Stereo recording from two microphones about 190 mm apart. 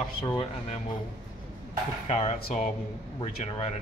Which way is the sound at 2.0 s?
35° left (ahead or behind).